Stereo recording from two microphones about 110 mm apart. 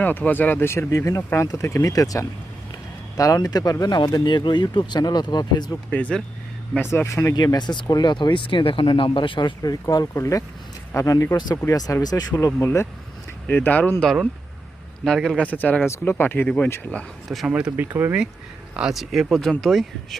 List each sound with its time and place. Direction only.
0.0 s speech: 15° left (ahead or behind); by 5.8 s 40° left (ahead or behind)
5.9 s speech: 10° left (ahead or behind)
6.7 s speech: 25° left (ahead or behind)
7.3 s speech: 40° left (ahead or behind)
13.5 s speech: 15° left (ahead or behind)
14.0 s speech: 5° left (ahead or behind)
17.9 s speech: 20° right (ahead or behind)
18.8 s speech: centre (ahead or behind)